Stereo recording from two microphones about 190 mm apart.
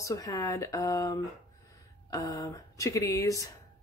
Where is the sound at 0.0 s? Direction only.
15° left (ahead or behind).